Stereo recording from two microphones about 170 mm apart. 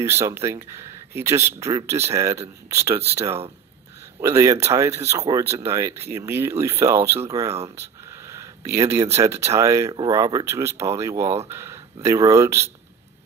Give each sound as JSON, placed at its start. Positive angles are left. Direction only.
{"t": 0.0, "sound": "speech", "side_deg": -15}
{"t": 4.2, "sound": "speech", "side_deg": -15}
{"t": 7.7, "sound": "a sound", "side_deg": -15}
{"t": 9.2, "sound": "speech", "side_deg": -15}